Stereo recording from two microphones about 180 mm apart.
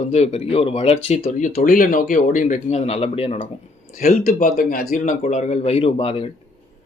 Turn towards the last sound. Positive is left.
turn(degrees=30)  # may be behind; listen again after turning